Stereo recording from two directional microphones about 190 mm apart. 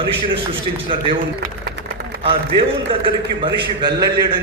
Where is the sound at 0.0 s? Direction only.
25° right (ahead or behind).